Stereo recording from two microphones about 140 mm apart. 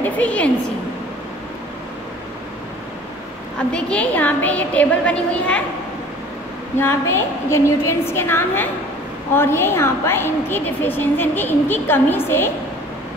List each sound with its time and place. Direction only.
0.0 s a woman's voice: 10° left (ahead or behind)
3.5 s a woman's voice: 5° left (ahead or behind)
6.8 s a woman's voice: 15° left (ahead or behind)